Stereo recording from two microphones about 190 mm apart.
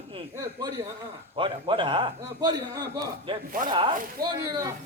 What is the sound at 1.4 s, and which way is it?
A man's voice, 25° right (ahead or behind).